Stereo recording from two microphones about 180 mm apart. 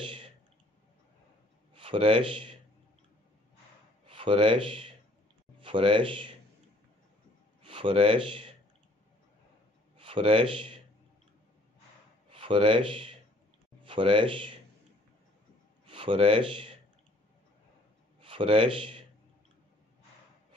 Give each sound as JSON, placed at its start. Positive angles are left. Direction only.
{"t": 1.7, "sound": "a man's voice", "side_deg": -30}
{"t": 4.0, "sound": "speech", "side_deg": -30}
{"t": 7.6, "sound": "speech", "side_deg": -30}
{"t": 9.9, "sound": "a man's voice", "side_deg": -30}
{"t": 12.3, "sound": "speech", "side_deg": -30}
{"t": 15.9, "sound": "speech", "side_deg": -30}
{"t": 18.2, "sound": "speech", "side_deg": -30}